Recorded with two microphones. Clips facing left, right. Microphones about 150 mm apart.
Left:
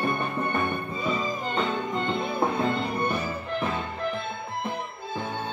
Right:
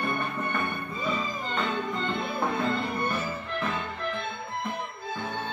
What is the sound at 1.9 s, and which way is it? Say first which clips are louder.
Music: left 3 dB; 30° left (ahead or behind).